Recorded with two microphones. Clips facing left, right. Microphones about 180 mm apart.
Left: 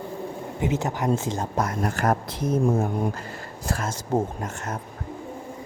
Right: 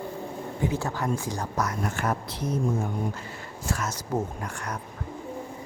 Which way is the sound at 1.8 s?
45° left (ahead or behind).